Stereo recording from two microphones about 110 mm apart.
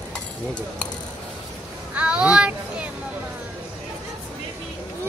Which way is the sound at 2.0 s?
10° right (ahead or behind).